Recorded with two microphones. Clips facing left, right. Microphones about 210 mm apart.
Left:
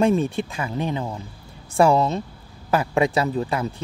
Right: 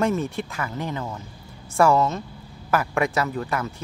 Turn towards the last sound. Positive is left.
turn(degrees=20)  # may be behind; listen again after turning